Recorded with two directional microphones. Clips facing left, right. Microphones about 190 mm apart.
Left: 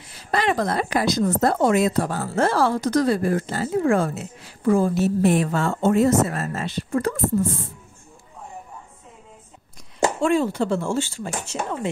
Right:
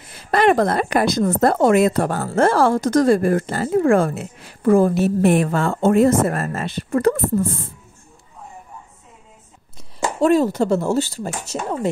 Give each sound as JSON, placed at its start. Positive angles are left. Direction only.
{"t": 0.1, "sound": "a woman's voice", "side_deg": -55}
{"t": 10.2, "sound": "speech", "side_deg": -40}